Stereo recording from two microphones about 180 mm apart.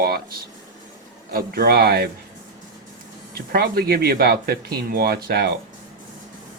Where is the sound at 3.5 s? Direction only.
60° right (ahead or behind).